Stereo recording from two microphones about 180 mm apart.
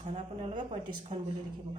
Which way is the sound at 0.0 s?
35° right (ahead or behind).